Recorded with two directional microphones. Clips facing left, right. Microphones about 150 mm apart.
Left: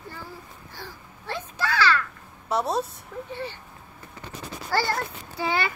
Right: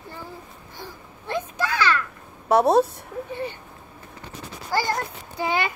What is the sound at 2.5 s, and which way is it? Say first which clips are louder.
Speech: right 8 dB; 60° right (ahead or behind).